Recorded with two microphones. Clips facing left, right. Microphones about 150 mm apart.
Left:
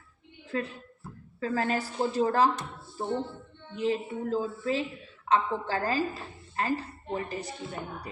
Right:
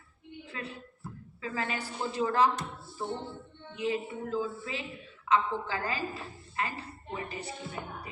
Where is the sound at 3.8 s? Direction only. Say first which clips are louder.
Left 3 dB; 35° left (ahead or behind).